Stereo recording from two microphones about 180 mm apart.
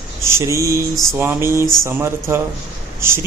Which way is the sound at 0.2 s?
15° right (ahead or behind).